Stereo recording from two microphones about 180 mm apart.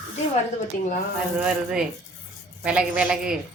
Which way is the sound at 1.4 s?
5° right (ahead or behind).